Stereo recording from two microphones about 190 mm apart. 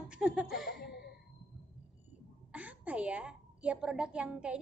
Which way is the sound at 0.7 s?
60° left (ahead or behind).